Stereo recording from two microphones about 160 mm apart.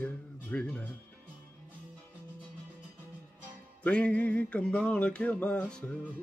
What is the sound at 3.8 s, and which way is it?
Music, 5° left (ahead or behind).